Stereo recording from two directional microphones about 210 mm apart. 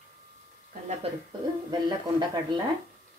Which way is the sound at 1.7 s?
20° right (ahead or behind).